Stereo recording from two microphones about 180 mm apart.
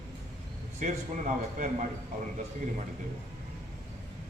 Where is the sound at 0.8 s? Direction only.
45° right (ahead or behind).